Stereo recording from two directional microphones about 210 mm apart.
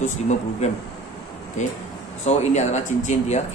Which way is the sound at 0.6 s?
35° left (ahead or behind).